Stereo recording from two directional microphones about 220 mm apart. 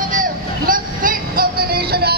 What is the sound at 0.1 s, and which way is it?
Music, 40° right (ahead or behind).